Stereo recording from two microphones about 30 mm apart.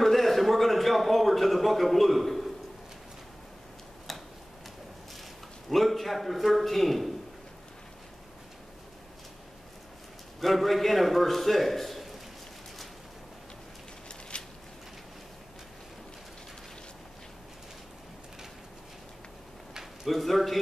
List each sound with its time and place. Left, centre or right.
0.0 s a sound: centre
4.1 s tick-tock: centre
5.7 s a man's voice: centre
10.4 s a man's voice: centre
14.3 s a sound: left
20.1 s a man's voice: centre